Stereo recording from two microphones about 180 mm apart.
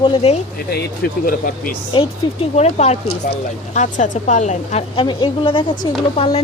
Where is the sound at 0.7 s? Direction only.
55° left (ahead or behind).